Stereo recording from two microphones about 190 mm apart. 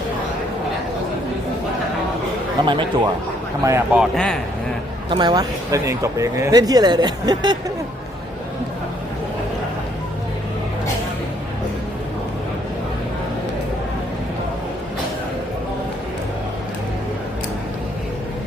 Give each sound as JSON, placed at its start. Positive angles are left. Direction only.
{"t": 2.6, "sound": "speech", "side_deg": -25}
{"t": 3.6, "sound": "a man's voice", "side_deg": -15}
{"t": 4.0, "sound": "speech", "side_deg": 0}
{"t": 5.0, "sound": "speech", "side_deg": -25}